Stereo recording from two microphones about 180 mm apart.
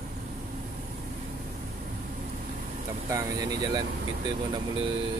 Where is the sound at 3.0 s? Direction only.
20° right (ahead or behind).